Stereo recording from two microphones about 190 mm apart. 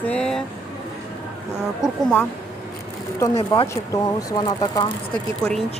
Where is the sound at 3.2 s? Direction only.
15° left (ahead or behind).